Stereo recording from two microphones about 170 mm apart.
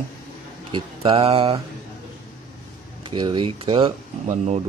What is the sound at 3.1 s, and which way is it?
Speech, 30° right (ahead or behind).